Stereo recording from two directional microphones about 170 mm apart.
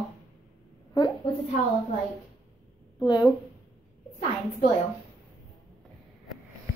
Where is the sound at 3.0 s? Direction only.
25° left (ahead or behind).